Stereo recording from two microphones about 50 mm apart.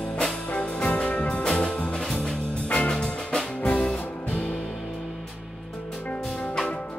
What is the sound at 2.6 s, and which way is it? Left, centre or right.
Music, left.